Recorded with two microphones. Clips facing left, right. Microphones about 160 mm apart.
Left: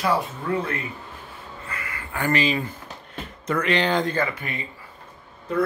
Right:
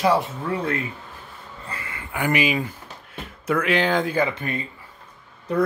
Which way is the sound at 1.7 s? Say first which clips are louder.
Even; 25° right (ahead or behind).